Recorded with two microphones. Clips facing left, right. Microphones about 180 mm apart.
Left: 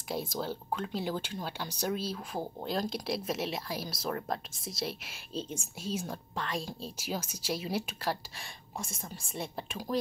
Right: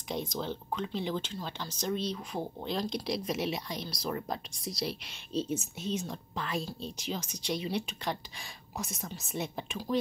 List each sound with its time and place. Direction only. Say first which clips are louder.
0.1 s speech: even; 5° left (ahead or behind)
8.7 s a woman's voice: right 2 dB; 30° left (ahead or behind)